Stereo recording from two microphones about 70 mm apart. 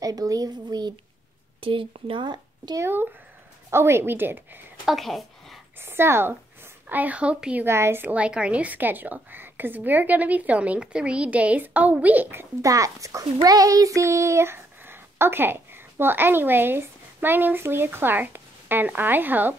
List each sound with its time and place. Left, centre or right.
0.0 s speech: right
2.2 s speech: right
2.8 s speech: right
4.8 s a sound: centre
5.8 s a woman's voice: right; by 7.6 s centre
7.6 s speech: right
8.0 s a woman's voice: centre
12.6 s a child's voice: right